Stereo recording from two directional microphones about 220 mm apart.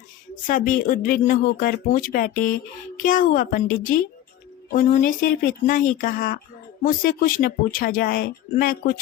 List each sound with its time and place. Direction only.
0.4 s speech: 35° left (ahead or behind)